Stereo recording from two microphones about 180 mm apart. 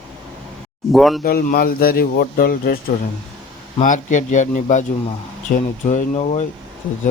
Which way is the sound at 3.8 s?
45° left (ahead or behind).